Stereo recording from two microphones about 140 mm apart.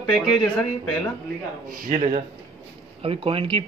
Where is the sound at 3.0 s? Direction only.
40° right (ahead or behind).